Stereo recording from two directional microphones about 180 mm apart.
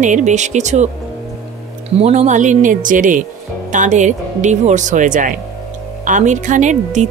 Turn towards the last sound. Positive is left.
turn(degrees=-40)  # may be behind; listen again after turning